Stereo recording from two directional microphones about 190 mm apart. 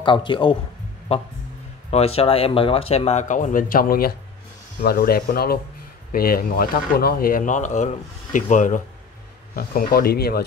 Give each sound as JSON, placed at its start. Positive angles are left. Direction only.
{"t": 0.0, "sound": "a man's voice", "side_deg": 25}